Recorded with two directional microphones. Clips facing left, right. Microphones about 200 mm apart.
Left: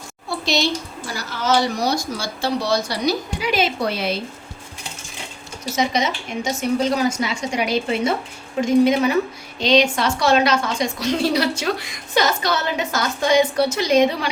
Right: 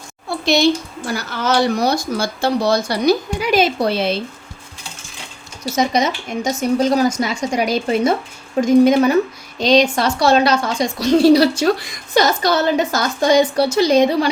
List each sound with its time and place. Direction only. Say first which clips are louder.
1.0 s speech: right 3 dB; 60° right (ahead or behind); by 4.2 s 25° right (ahead or behind)
5.7 s a woman's voice: right 4 dB; 40° right (ahead or behind)